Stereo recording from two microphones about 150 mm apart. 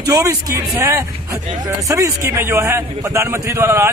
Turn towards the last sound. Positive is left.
turn(degrees=-20)  # may be behind; listen again after turning